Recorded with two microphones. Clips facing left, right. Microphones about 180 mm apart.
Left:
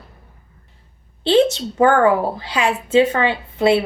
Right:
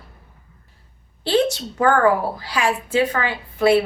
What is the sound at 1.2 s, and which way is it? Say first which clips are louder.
Speech: left 4 dB; 20° left (ahead or behind).